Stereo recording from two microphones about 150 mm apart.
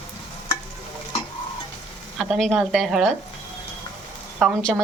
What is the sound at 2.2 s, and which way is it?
Speech, centre (ahead or behind).